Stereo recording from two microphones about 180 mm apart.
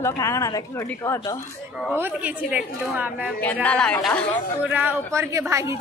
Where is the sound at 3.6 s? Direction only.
5° left (ahead or behind).